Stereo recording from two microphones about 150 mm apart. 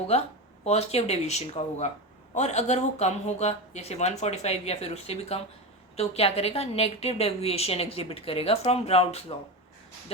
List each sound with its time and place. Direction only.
0.1 s a woman's voice: 45° left (ahead or behind)